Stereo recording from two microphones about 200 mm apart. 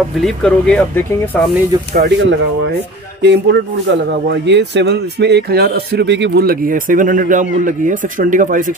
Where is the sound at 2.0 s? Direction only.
55° right (ahead or behind).